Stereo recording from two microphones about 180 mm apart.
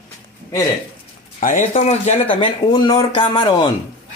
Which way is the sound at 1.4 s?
45° left (ahead or behind).